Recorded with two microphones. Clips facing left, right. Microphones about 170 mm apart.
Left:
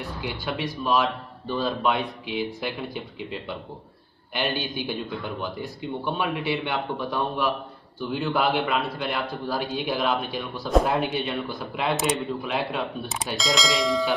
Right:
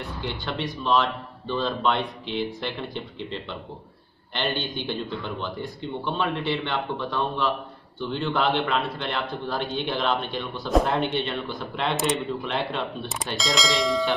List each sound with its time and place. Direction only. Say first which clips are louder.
0.2 s a man's voice: even; 10° left (ahead or behind)